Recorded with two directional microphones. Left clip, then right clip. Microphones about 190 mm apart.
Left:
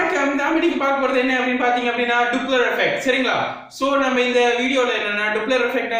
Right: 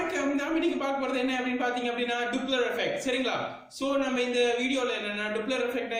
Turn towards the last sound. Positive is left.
turn(degrees=-10)  # may be behind; listen again after turning